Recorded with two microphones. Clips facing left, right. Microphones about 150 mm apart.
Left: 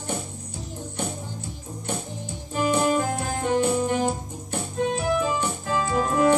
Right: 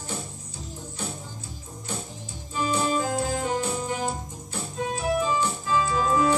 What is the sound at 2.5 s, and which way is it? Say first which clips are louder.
Music: left 4 dB; 60° left (ahead or behind).